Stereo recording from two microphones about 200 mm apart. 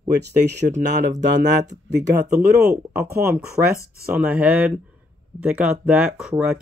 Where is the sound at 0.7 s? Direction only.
35° right (ahead or behind).